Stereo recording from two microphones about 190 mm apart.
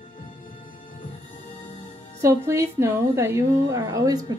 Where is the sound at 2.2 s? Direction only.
15° right (ahead or behind).